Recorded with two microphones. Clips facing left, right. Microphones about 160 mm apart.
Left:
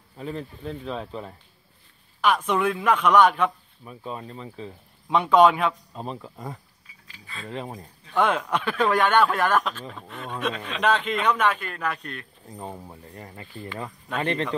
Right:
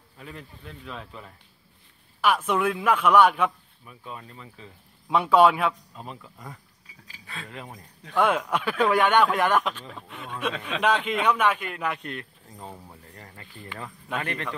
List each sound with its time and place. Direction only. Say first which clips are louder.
0.2 s speech: left 9 dB; 35° left (ahead or behind)
2.2 s speech: left 1 dB; 5° right (ahead or behind)
3.8 s speech: left 6 dB; 30° left (ahead or behind)
5.0 s a man's voice: left 1 dB; 5° right (ahead or behind)
5.9 s speech: left 6 dB; 30° left (ahead or behind)
8.1 s speech: even; 5° right (ahead or behind)
12.5 s speech: left 5 dB; 15° left (ahead or behind)